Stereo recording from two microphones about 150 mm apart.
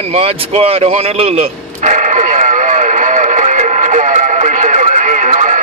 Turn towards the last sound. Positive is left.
turn(degrees=-55)  # may be behind; listen again after turning